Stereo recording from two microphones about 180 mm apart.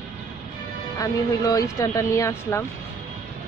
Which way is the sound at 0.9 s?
20° left (ahead or behind).